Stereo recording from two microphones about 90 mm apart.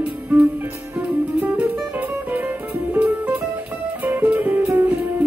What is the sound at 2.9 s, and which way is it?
Music, 20° right (ahead or behind).